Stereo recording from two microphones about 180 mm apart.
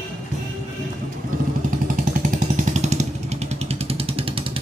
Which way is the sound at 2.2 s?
45° right (ahead or behind).